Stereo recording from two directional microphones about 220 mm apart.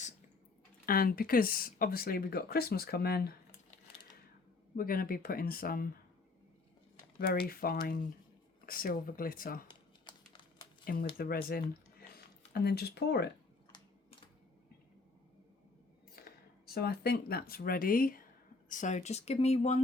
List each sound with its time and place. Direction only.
0.9 s speech: 40° left (ahead or behind)
4.8 s speech: 40° left (ahead or behind)
7.5 s speech: 40° left (ahead or behind)
10.9 s speech: 40° left (ahead or behind)
16.2 s a sound: 45° left (ahead or behind)
16.6 s speech: 45° left (ahead or behind); by 19.8 s 30° left (ahead or behind)